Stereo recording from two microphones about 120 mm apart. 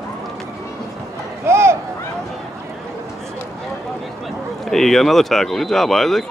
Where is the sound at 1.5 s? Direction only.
20° right (ahead or behind).